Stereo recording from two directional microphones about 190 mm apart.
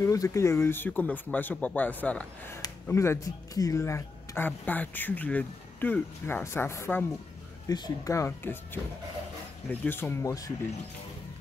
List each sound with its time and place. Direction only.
0.0 s speech: 15° left (ahead or behind)
9.7 s speech: 10° left (ahead or behind)